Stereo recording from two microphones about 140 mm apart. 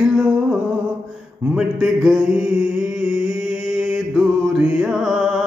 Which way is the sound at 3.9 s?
5° right (ahead or behind).